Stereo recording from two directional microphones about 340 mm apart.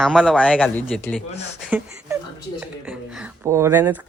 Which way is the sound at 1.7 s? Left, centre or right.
Centre.